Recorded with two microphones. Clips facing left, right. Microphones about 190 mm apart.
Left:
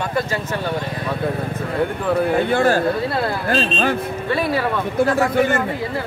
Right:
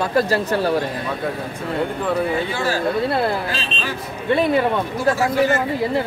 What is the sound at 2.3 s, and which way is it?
Speech, 55° left (ahead or behind).